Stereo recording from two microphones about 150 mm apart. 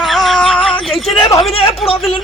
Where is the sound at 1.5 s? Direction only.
40° left (ahead or behind).